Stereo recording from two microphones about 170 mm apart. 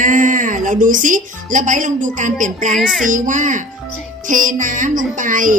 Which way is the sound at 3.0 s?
50° right (ahead or behind).